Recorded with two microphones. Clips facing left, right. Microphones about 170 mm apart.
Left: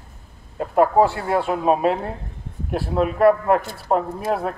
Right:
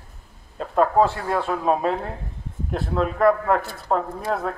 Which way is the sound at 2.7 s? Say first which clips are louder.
Left 3 dB; 10° left (ahead or behind).